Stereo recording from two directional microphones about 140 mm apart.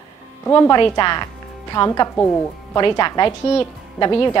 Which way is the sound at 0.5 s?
20° left (ahead or behind).